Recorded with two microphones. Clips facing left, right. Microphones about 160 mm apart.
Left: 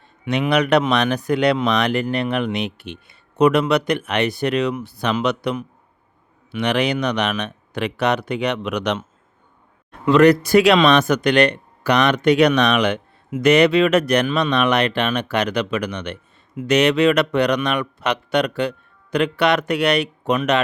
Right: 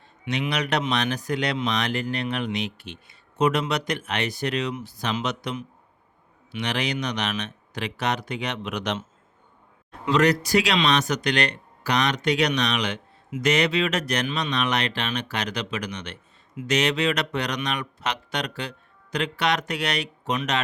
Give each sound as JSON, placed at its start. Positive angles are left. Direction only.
{"t": 0.3, "sound": "speech", "side_deg": 60}
{"t": 10.1, "sound": "speech", "side_deg": 55}